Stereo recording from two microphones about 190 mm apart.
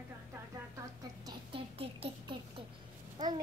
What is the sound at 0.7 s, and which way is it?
A child's voice, 25° right (ahead or behind).